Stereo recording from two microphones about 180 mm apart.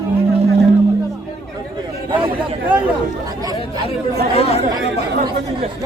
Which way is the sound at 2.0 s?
30° right (ahead or behind).